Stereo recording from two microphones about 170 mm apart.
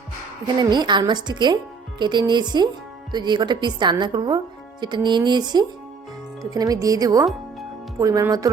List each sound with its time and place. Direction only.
0.4 s a woman's voice: 25° right (ahead or behind)